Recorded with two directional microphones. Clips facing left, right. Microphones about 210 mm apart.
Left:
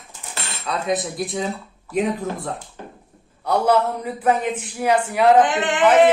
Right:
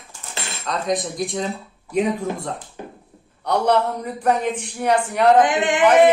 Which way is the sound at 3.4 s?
5° left (ahead or behind).